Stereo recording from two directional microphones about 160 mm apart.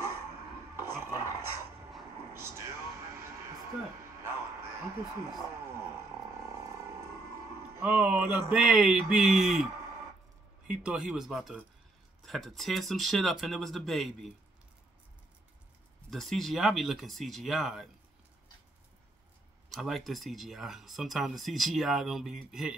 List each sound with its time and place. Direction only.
0.3 s a sound: 15° right (ahead or behind)
2.2 s music: 15° right (ahead or behind)
4.2 s a sound: 15° right (ahead or behind)
7.7 s speech: 10° right (ahead or behind)
10.7 s speech: 5° right (ahead or behind)
16.1 s speech: centre (ahead or behind)
19.7 s speech: centre (ahead or behind)